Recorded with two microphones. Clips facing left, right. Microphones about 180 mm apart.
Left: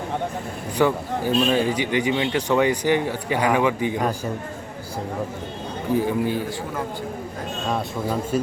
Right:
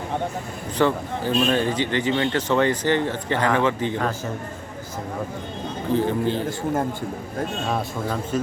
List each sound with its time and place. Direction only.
0.8 s a man's voice: 10° left (ahead or behind)
5.9 s a man's voice: 10° left (ahead or behind)
8.0 s a man's voice: 10° left (ahead or behind)